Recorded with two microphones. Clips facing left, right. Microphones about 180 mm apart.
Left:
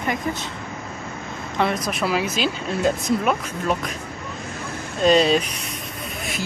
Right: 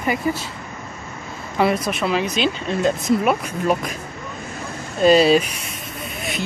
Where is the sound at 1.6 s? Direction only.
5° right (ahead or behind).